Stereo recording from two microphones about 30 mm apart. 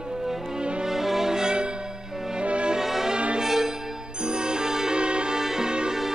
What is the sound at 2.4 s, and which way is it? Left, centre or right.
Music, right.